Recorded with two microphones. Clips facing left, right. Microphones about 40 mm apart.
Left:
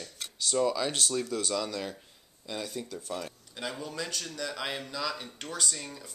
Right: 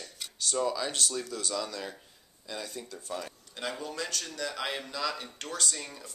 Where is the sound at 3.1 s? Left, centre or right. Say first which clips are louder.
Right 2 dB; centre.